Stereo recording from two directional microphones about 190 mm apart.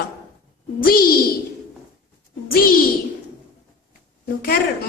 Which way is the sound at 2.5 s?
50° left (ahead or behind).